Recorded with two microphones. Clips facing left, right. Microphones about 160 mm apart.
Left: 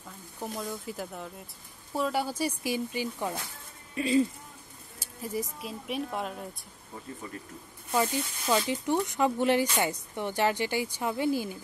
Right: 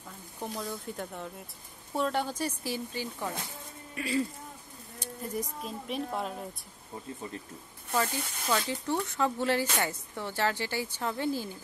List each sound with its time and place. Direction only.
0.4 s speech: centre (ahead or behind); by 4.3 s 20° left (ahead or behind)
4.9 s speech: 5° left (ahead or behind)
7.9 s speech: 15° left (ahead or behind)